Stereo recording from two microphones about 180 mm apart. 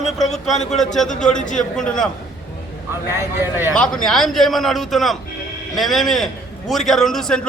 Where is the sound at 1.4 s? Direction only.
45° left (ahead or behind).